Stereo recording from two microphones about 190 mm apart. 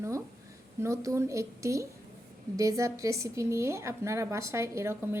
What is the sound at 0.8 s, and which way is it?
Speech, 15° right (ahead or behind).